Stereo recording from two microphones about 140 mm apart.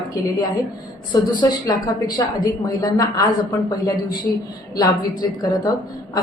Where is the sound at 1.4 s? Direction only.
25° left (ahead or behind).